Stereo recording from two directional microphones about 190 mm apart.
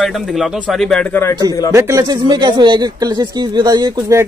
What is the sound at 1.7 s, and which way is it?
Speech, 15° right (ahead or behind).